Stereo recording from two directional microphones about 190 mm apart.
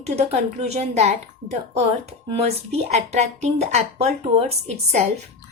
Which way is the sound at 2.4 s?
35° right (ahead or behind).